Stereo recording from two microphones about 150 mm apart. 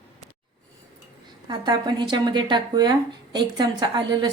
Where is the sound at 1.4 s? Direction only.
30° right (ahead or behind).